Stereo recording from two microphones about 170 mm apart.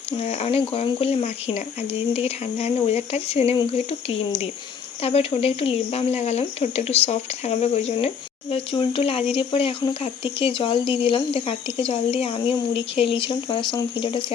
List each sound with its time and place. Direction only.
0.2 s speech: 40° left (ahead or behind)
5.0 s speech: 35° left (ahead or behind)